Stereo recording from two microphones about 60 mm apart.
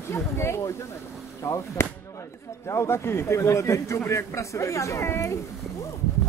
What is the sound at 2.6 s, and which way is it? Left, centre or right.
Speech, left.